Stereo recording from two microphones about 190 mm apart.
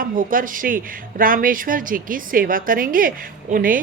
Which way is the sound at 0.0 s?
45° right (ahead or behind).